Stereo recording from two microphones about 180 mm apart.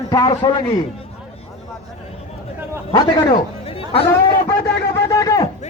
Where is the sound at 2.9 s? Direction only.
25° left (ahead or behind).